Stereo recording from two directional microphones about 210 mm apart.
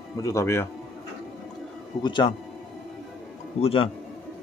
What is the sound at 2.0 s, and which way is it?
Speech, 20° left (ahead or behind).